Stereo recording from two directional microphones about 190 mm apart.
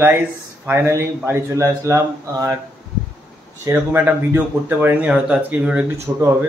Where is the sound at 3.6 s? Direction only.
10° right (ahead or behind).